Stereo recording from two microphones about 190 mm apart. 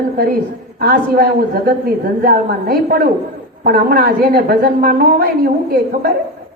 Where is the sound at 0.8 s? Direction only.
55° right (ahead or behind).